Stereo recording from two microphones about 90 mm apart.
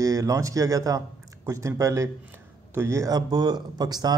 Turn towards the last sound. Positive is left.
turn(degrees=-50)  # may be behind; listen again after turning